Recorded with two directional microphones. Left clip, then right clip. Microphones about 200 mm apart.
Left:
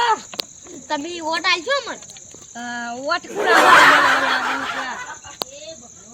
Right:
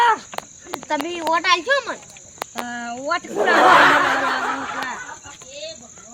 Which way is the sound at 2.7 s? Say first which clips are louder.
Left 2 dB; 5° right (ahead or behind).